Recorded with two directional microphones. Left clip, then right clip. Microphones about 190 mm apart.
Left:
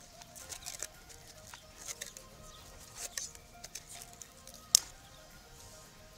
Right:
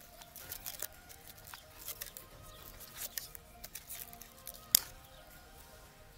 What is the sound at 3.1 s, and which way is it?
Music, 5° left (ahead or behind).